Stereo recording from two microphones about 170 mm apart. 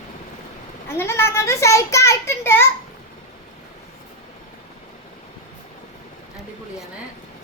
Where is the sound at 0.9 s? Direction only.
15° left (ahead or behind).